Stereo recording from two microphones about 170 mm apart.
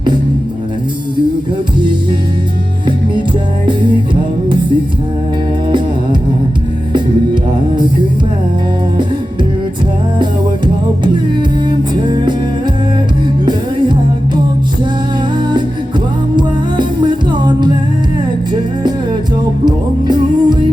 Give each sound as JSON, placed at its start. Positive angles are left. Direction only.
{"t": 3.7, "sound": "music", "side_deg": -25}
{"t": 12.0, "sound": "music", "side_deg": -25}
{"t": 13.4, "sound": "music", "side_deg": -25}
{"t": 16.3, "sound": "music", "side_deg": -25}
{"t": 19.6, "sound": "music", "side_deg": -25}